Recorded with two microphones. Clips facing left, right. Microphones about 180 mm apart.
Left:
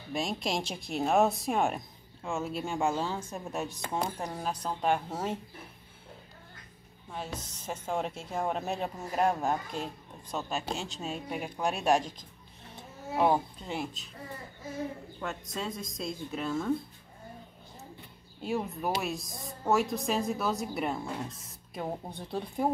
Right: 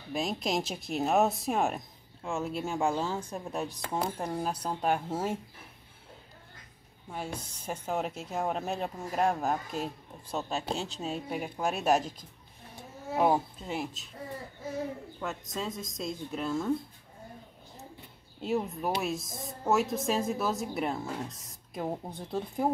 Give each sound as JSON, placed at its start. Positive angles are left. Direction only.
{"t": 0.1, "sound": "a woman's voice", "side_deg": 0}
{"t": 7.1, "sound": "a woman's voice", "side_deg": -10}
{"t": 10.5, "sound": "speech", "side_deg": -35}
{"t": 11.2, "sound": "speech", "side_deg": 0}
{"t": 15.1, "sound": "speech", "side_deg": 0}
{"t": 18.4, "sound": "speech", "side_deg": 0}